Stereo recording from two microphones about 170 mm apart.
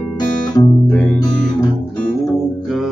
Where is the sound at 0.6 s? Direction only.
10° left (ahead or behind).